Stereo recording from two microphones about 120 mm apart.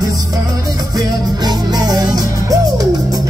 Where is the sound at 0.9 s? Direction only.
35° right (ahead or behind).